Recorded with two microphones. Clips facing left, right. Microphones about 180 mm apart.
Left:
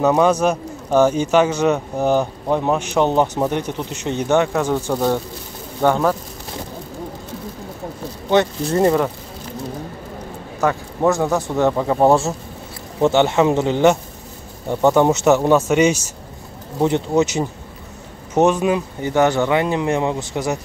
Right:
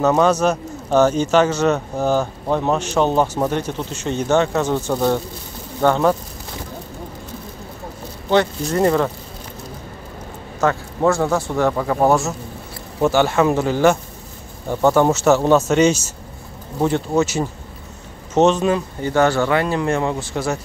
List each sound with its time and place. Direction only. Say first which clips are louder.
0.0 s speech: even; 10° left (ahead or behind)
8.6 s speech: left 1 dB; 25° left (ahead or behind)
10.6 s speech: even; 10° left (ahead or behind)
12.1 s speech: left 2 dB; 30° left (ahead or behind)